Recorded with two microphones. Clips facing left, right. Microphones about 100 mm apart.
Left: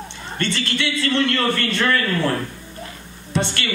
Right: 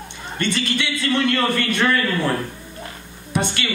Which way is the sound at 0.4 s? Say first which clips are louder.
Right 1 dB; 15° right (ahead or behind).